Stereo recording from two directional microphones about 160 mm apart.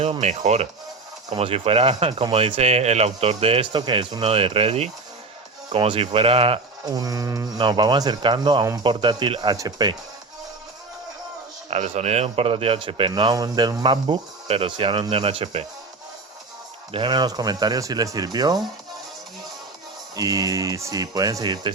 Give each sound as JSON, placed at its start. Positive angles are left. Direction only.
{"t": 0.0, "sound": "speech", "side_deg": -45}
{"t": 6.8, "sound": "speech", "side_deg": -25}
{"t": 11.7, "sound": "speech", "side_deg": -45}
{"t": 16.9, "sound": "speech", "side_deg": -30}
{"t": 20.1, "sound": "speech", "side_deg": -20}